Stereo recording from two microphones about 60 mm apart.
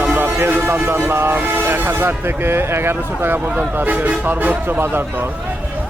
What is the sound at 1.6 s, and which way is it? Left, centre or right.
Speech, right.